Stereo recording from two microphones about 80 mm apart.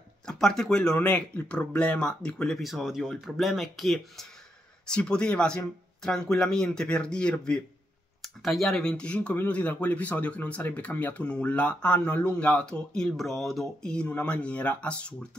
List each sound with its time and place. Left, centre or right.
0.3 s speech: centre
2.6 s speech: centre